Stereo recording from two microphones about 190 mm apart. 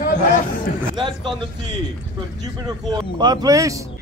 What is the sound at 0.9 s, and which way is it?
Speech, 25° right (ahead or behind).